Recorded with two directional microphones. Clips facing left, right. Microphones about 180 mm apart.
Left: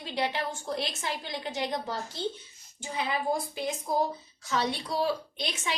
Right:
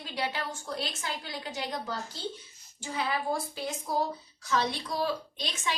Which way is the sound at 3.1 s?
20° left (ahead or behind).